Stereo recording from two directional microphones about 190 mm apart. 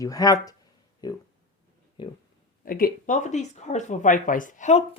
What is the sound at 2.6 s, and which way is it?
Speech, 50° left (ahead or behind).